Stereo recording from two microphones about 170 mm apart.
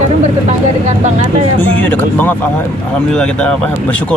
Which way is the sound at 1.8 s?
10° left (ahead or behind).